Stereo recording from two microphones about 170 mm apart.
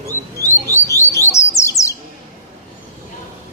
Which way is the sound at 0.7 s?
15° left (ahead or behind).